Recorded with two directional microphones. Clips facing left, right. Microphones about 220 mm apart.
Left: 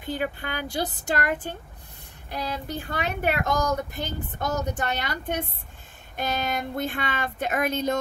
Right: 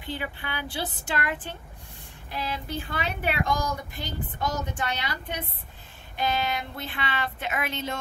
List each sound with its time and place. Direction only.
0.0 s speech: 45° left (ahead or behind)